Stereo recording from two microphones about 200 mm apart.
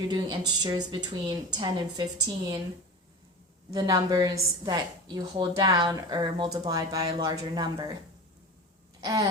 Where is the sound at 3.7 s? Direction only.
20° right (ahead or behind).